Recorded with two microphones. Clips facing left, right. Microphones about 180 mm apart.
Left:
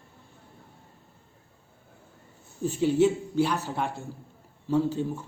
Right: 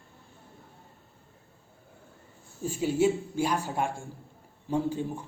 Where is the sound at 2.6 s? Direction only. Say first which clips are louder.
Left 3 dB; 10° right (ahead or behind).